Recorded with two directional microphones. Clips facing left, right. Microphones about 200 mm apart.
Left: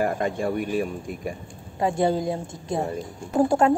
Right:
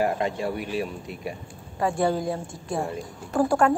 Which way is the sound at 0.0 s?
50° left (ahead or behind).